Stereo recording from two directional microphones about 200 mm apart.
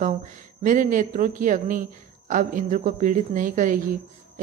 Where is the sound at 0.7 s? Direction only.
40° right (ahead or behind).